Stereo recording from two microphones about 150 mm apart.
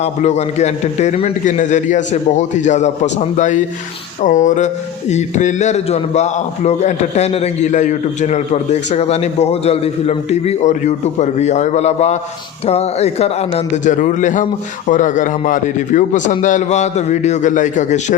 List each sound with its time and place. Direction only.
0.0 s speech: 50° left (ahead or behind)
13.9 s a man's voice: 55° left (ahead or behind)